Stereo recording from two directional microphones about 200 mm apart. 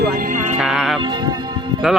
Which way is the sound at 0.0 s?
45° right (ahead or behind).